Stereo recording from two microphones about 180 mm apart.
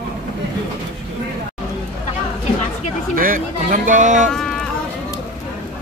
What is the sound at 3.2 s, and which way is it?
Speech, 50° right (ahead or behind).